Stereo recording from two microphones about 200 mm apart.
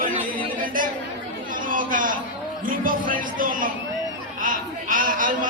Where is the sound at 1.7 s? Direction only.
40° right (ahead or behind).